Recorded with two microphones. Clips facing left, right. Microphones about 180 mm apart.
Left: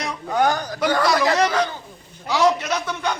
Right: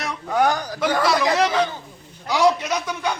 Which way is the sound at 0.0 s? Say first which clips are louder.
Even; centre (ahead or behind).